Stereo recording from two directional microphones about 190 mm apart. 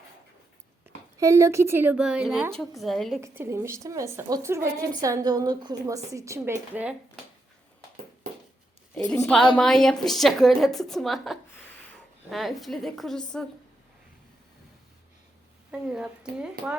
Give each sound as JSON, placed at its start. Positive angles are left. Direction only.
{"t": 1.2, "sound": "a woman's voice", "side_deg": -15}
{"t": 3.2, "sound": "a woman's voice", "side_deg": -15}
{"t": 9.0, "sound": "a woman's voice", "side_deg": 5}
{"t": 15.7, "sound": "a woman's voice", "side_deg": -5}